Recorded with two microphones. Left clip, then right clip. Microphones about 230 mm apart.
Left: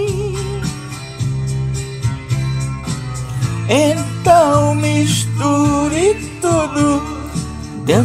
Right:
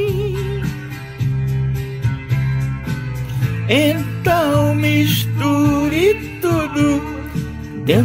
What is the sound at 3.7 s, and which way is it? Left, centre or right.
Music, centre.